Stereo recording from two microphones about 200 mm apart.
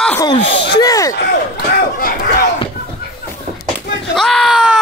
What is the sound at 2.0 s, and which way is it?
Chop, 45° left (ahead or behind).